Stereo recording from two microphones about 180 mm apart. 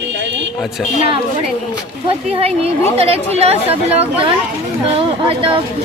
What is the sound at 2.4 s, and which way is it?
Speech, 35° right (ahead or behind).